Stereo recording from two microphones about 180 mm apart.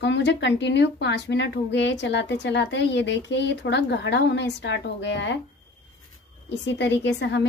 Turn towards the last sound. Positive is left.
turn(degrees=80)